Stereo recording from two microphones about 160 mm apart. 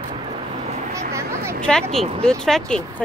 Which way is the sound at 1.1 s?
20° right (ahead or behind).